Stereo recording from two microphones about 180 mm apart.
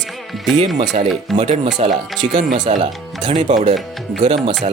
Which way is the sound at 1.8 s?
35° right (ahead or behind).